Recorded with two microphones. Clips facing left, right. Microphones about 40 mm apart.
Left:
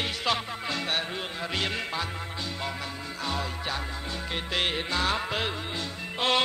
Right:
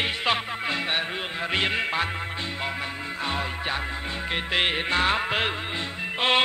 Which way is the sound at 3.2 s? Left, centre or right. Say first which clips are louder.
Right 3 dB; right.